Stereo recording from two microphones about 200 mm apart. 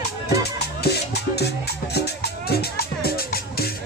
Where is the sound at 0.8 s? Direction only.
55° left (ahead or behind).